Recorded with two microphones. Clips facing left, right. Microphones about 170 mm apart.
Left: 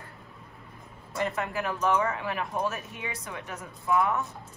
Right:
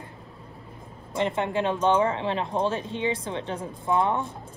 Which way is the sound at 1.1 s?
25° right (ahead or behind).